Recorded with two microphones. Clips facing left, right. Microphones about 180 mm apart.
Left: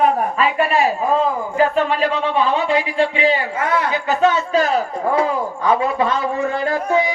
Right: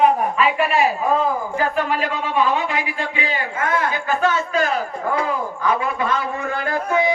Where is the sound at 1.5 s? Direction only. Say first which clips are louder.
Left 8 dB; 25° left (ahead or behind).